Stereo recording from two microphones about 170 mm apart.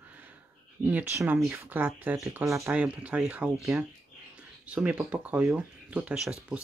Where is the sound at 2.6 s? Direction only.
5° right (ahead or behind).